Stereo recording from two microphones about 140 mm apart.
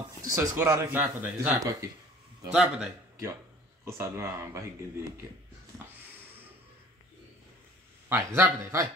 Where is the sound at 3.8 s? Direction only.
20° right (ahead or behind).